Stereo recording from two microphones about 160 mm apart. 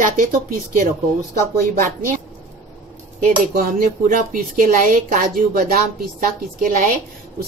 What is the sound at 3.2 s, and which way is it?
Speech, 60° right (ahead or behind).